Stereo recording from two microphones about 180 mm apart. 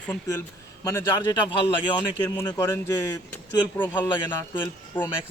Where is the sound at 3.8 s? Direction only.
25° left (ahead or behind).